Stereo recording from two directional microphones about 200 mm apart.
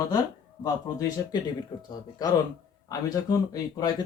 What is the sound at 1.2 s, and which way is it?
Speech, 15° left (ahead or behind).